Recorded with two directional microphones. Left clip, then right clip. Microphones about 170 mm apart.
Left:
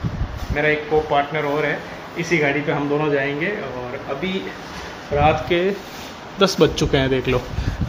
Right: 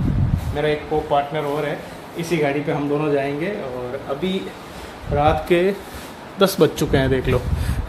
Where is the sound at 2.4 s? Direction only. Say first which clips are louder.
Even; 15° right (ahead or behind).